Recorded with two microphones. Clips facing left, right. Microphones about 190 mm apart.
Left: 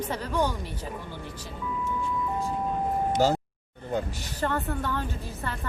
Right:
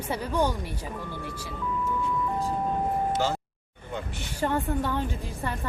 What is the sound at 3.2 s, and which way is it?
Speech, 40° left (ahead or behind).